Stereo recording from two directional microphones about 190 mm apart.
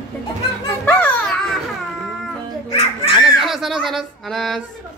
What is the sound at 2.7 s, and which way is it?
Dog, 25° left (ahead or behind).